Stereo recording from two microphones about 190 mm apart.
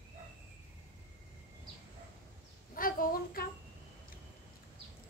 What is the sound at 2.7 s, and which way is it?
Chicken, 50° left (ahead or behind).